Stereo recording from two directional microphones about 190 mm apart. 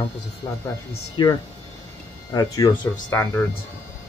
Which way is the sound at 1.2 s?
25° left (ahead or behind).